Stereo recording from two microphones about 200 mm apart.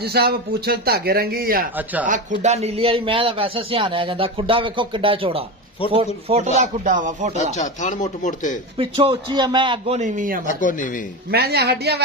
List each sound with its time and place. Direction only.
0.0 s speech: 50° right (ahead or behind)
2.4 s a man's voice: 30° right (ahead or behind)
7.5 s speech: 35° left (ahead or behind)
8.7 s a man's voice: 25° right (ahead or behind)
9.9 s speech: 40° right (ahead or behind)
10.4 s speech: 40° left (ahead or behind)
11.3 s speech: 55° right (ahead or behind)